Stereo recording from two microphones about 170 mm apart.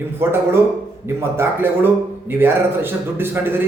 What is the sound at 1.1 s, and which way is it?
A man's voice, 15° right (ahead or behind).